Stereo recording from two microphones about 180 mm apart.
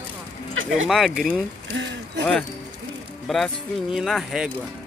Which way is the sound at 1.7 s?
90° right.